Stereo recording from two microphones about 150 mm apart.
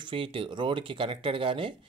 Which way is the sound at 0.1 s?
35° right (ahead or behind).